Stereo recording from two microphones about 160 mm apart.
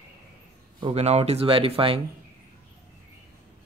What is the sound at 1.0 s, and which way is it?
Speech, 40° right (ahead or behind).